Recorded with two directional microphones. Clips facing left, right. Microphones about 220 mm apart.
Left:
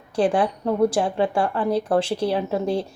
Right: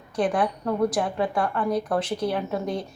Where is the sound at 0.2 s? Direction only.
30° left (ahead or behind).